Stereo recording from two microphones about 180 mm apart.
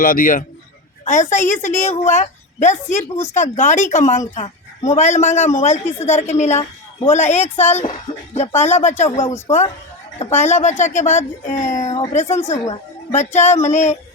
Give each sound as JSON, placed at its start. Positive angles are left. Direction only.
{"t": 0.0, "sound": "a man's voice", "side_deg": 50}
{"t": 12.6, "sound": "a woman's voice", "side_deg": 20}
{"t": 13.1, "sound": "a woman's voice", "side_deg": 40}